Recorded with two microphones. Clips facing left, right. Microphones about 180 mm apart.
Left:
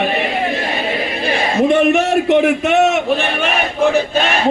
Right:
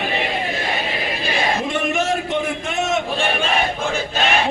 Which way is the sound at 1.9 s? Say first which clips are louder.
Left 8 dB; 70° left (ahead or behind).